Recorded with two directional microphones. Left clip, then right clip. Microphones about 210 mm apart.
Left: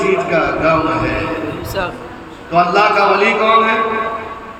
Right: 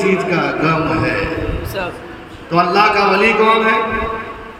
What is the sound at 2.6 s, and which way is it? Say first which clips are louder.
A man's voice: left 1 dB; 60° right (ahead or behind).